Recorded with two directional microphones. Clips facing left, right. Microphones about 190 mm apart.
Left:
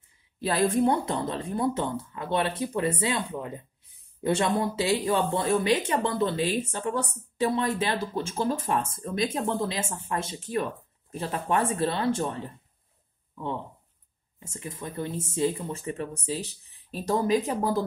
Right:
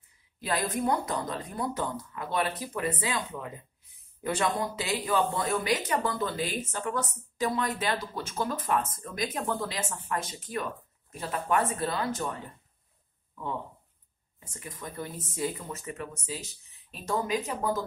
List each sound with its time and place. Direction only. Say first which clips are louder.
0.4 s speech: left 6 dB; 30° left (ahead or behind)